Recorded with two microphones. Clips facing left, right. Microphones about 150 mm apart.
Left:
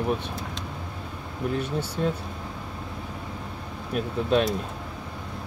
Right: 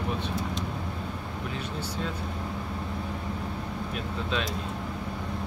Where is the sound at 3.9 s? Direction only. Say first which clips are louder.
Left 11 dB; 50° left (ahead or behind).